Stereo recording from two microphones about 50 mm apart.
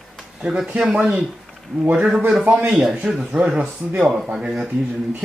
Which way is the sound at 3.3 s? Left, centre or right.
Centre.